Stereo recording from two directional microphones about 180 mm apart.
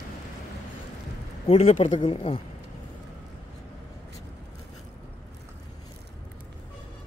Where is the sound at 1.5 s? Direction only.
35° left (ahead or behind).